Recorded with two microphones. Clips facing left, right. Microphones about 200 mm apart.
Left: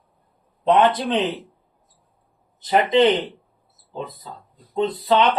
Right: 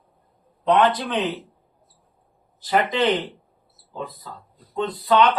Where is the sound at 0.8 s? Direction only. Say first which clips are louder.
Left 3 dB; 25° left (ahead or behind).